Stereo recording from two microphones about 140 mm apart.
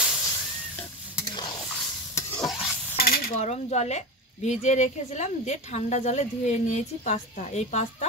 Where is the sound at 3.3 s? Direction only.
55° left (ahead or behind).